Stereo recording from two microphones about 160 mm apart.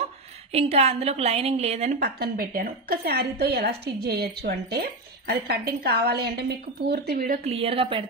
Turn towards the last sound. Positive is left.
turn(degrees=-35)  # may be behind; listen again after turning